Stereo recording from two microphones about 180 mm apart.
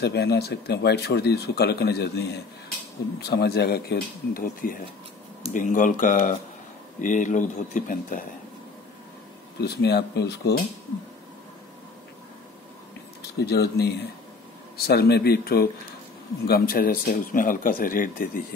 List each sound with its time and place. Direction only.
0.0 s speech: 65° left (ahead or behind); by 8.3 s 50° left (ahead or behind)
9.6 s speech: 65° left (ahead or behind)
13.4 s speech: 65° left (ahead or behind)